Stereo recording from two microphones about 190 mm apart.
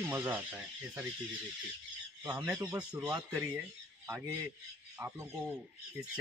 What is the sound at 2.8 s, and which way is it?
Speech, 5° right (ahead or behind).